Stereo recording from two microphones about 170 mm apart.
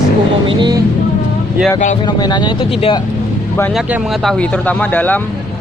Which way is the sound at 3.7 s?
5° right (ahead or behind).